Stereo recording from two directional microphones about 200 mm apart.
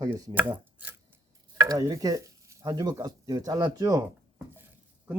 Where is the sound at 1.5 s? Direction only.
15° right (ahead or behind).